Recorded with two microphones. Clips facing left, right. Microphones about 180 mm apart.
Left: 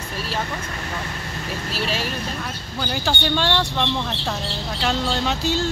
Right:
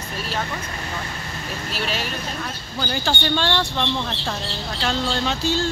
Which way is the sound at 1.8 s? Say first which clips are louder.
Left 1 dB; centre (ahead or behind).